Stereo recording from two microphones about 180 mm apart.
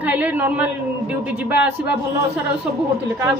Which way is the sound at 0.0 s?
10° right (ahead or behind).